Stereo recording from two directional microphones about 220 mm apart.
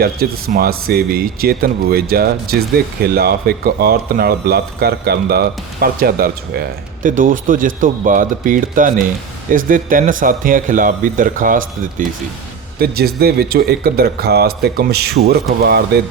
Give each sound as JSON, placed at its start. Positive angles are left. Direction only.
{"t": 0.0, "sound": "a man's voice", "side_deg": -45}